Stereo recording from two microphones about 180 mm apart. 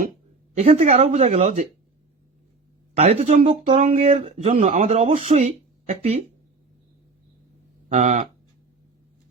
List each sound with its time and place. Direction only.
0.5 s speech: 40° right (ahead or behind)
2.9 s a woman's voice: 35° right (ahead or behind)
7.9 s speech: 40° right (ahead or behind)